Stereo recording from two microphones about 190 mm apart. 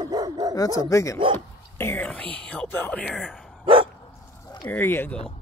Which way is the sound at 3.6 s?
25° right (ahead or behind).